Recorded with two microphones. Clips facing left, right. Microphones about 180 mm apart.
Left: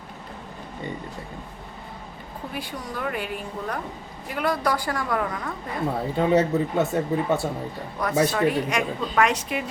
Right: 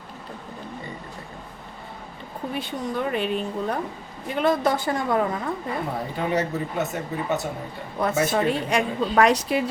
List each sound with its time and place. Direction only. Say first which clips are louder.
2.6 s speech: right 4 dB; 25° right (ahead or behind)
6.1 s speech: left 5 dB; 30° left (ahead or behind)
7.9 s a woman's voice: even; 25° right (ahead or behind)